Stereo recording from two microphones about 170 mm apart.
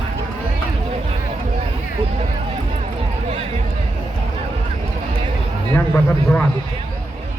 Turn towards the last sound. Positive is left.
turn(degrees=10)  # may be behind; listen again after turning